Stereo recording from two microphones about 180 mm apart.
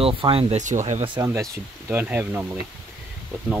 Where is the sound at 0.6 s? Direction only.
45° right (ahead or behind).